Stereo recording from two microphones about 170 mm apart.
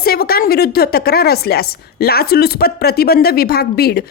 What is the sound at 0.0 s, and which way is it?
A woman's voice, 65° left (ahead or behind).